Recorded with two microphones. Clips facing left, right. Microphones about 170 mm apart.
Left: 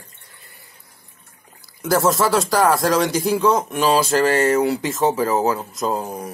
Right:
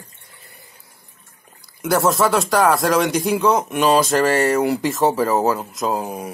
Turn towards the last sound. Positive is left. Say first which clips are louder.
# right 1 dB
turn(degrees=-10)  # may be behind; listen again after turning